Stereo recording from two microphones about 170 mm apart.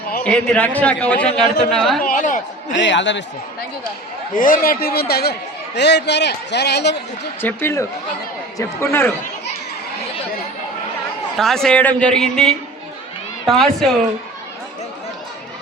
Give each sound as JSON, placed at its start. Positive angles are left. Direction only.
{"t": 0.2, "sound": "a man's voice", "side_deg": 5}
{"t": 2.0, "sound": "a sound", "side_deg": 50}
{"t": 2.7, "sound": "a man's voice", "side_deg": 90}
{"t": 4.4, "sound": "a man's voice", "side_deg": 55}
{"t": 7.4, "sound": "a man's voice", "side_deg": 15}
{"t": 11.3, "sound": "a man's voice", "side_deg": 5}